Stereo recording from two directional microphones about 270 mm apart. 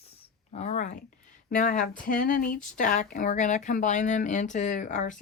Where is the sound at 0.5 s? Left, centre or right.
Left.